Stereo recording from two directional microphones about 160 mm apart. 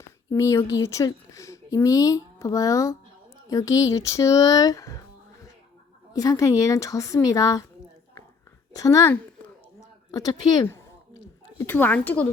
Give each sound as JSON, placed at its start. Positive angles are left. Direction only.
{"t": 0.3, "sound": "speech", "side_deg": 20}
{"t": 6.1, "sound": "speech", "side_deg": 20}
{"t": 8.7, "sound": "a woman's voice", "side_deg": 20}